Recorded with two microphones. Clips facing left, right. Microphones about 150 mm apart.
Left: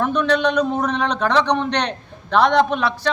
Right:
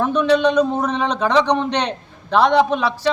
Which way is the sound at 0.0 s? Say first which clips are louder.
Right 3 dB; 10° right (ahead or behind).